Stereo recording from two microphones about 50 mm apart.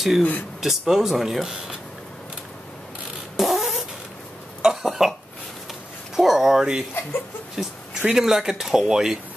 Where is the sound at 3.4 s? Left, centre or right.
Centre.